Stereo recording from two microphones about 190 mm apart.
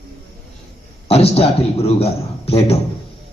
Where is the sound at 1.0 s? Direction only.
30° left (ahead or behind).